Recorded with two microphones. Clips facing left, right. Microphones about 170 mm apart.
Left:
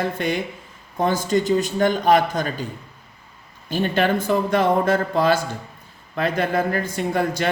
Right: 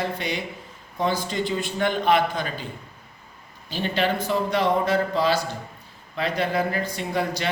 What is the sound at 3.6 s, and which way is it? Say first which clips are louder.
Speech: left 4 dB; 50° left (ahead or behind).